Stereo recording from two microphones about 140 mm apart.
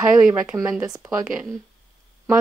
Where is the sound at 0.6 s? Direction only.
25° right (ahead or behind).